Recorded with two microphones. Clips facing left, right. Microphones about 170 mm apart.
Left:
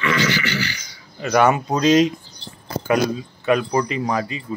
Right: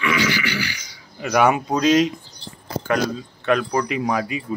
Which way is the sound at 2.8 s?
10° left (ahead or behind).